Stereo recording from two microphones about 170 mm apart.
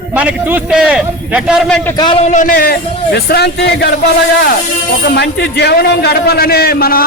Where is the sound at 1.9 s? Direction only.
25° left (ahead or behind).